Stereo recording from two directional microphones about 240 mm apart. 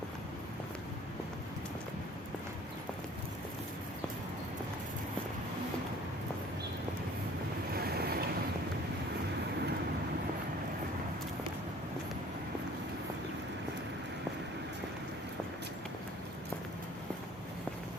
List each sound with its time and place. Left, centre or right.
7.8 s boat: right